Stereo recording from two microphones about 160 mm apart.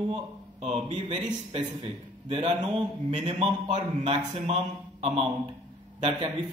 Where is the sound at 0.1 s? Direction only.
40° right (ahead or behind).